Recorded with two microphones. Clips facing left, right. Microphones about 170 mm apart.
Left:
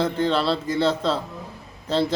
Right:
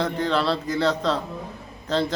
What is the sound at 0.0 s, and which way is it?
A man's voice, centre (ahead or behind).